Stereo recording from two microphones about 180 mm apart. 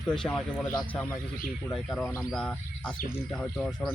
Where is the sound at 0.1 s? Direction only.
Centre (ahead or behind).